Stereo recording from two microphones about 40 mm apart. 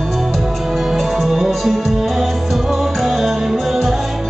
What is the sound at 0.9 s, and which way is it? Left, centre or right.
Music, centre.